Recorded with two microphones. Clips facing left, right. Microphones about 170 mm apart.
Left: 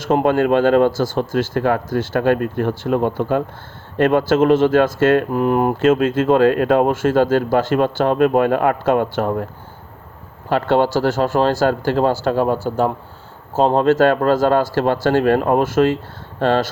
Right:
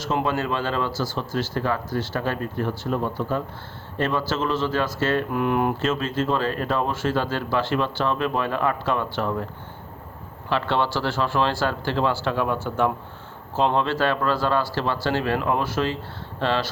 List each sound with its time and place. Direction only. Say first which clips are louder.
0.0 s speech: left 9 dB; 50° left (ahead or behind); by 3.4 s 70° left (ahead or behind)
3.9 s speech: left 10 dB; 55° left (ahead or behind)
5.3 s speech: left 6 dB; 35° left (ahead or behind)
10.5 s speech: left 8 dB; 45° left (ahead or behind)